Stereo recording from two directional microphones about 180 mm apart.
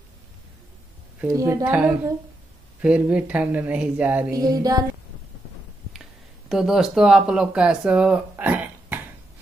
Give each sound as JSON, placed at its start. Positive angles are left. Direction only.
{"t": 1.2, "sound": "speech", "side_deg": -15}
{"t": 2.8, "sound": "speech", "side_deg": -5}
{"t": 4.3, "sound": "music", "side_deg": -20}
{"t": 6.5, "sound": "speech", "side_deg": 0}